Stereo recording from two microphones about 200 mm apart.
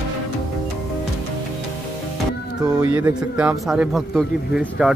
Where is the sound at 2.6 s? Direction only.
15° right (ahead or behind).